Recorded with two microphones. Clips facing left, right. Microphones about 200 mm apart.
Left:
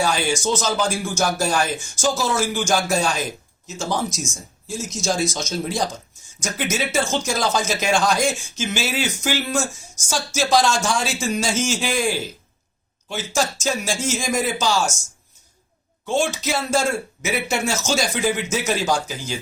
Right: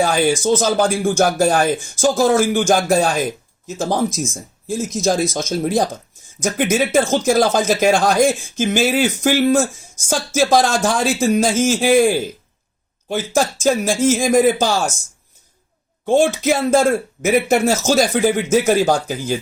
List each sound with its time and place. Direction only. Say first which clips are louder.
0.0 s speech: right 5 dB; 55° right (ahead or behind)
16.2 s speech: right 8 dB; 55° right (ahead or behind)